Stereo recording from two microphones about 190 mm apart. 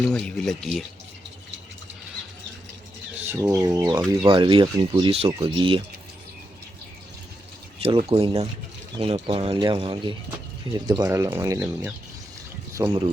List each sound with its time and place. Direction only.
0.1 s speech: 5° left (ahead or behind)
3.2 s speech: 10° right (ahead or behind); by 5.8 s 30° right (ahead or behind)
7.8 s speech: 30° right (ahead or behind)